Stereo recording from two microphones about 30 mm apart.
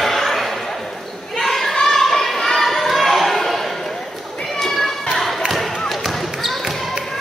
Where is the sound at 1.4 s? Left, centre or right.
Centre.